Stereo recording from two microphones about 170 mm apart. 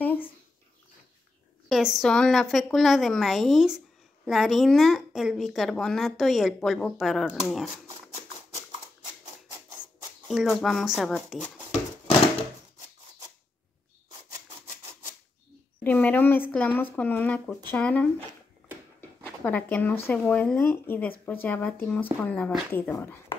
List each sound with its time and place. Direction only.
0.0 s a sound: 10° left (ahead or behind)
1.7 s speech: centre (ahead or behind)
10.2 s speech: centre (ahead or behind)
15.8 s speech: 10° left (ahead or behind)
18.9 s a sound: 10° left (ahead or behind)
20.1 s speech: 10° left (ahead or behind)